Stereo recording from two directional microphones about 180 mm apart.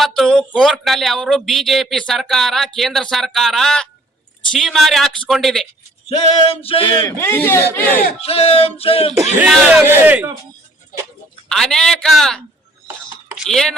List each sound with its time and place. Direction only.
0.0 s speech: centre (ahead or behind)
6.1 s male singing: 30° left (ahead or behind)
7.0 s speech: 15° left (ahead or behind)
8.2 s male singing: 35° left (ahead or behind)
9.5 s speech: centre (ahead or behind)
11.4 s speech: centre (ahead or behind)
13.2 s a sound: centre (ahead or behind)